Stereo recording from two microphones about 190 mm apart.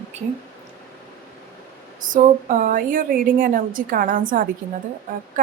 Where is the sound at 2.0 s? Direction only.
45° right (ahead or behind).